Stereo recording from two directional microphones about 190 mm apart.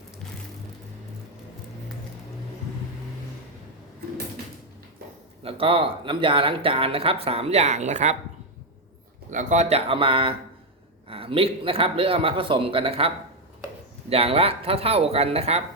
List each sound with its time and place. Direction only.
5.4 s speech: 30° right (ahead or behind)
9.3 s speech: 40° right (ahead or behind)
14.1 s speech: 30° right (ahead or behind)